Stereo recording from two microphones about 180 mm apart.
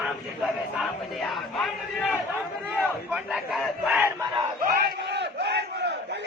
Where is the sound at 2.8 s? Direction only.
5° right (ahead or behind).